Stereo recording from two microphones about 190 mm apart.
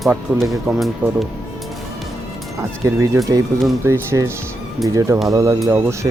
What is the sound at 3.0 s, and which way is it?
Speech, 15° right (ahead or behind).